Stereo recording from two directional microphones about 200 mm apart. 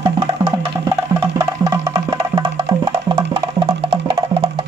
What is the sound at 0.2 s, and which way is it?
Music, 25° right (ahead or behind).